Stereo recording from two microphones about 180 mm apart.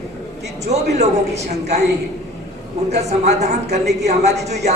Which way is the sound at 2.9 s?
40° right (ahead or behind).